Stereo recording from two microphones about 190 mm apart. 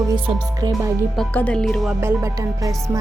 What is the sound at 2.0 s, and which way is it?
Speech, 15° right (ahead or behind).